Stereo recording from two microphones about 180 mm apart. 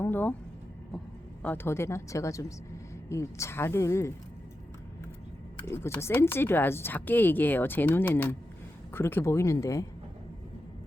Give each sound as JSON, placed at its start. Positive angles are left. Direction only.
{"t": 0.0, "sound": "speech", "side_deg": 10}
{"t": 5.6, "sound": "speech", "side_deg": 15}